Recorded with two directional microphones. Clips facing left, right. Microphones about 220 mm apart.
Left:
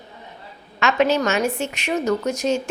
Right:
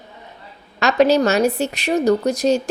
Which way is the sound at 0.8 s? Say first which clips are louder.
Right 4 dB; 35° right (ahead or behind).